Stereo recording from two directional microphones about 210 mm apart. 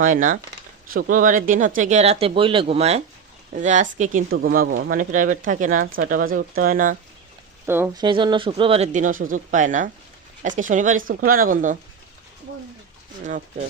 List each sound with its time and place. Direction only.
0.0 s speech: 40° right (ahead or behind)
7.7 s speech: 10° right (ahead or behind)
8.0 s speech: 20° right (ahead or behind); by 11.8 s 40° right (ahead or behind)